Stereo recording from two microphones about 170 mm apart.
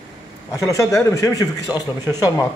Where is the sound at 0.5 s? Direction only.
15° left (ahead or behind).